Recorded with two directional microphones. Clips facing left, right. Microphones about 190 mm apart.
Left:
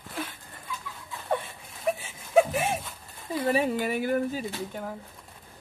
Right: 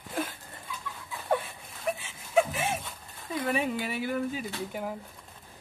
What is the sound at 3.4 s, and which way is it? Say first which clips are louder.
Speech: left 4 dB; 35° left (ahead or behind).